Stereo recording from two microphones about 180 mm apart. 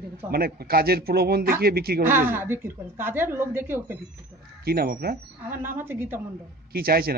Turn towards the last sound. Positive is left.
turn(degrees=-55)  # may be behind; listen again after turning